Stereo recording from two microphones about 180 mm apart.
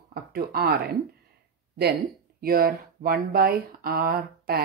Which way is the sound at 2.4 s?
55° right (ahead or behind).